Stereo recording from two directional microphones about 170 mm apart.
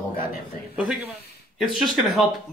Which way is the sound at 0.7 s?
5° right (ahead or behind).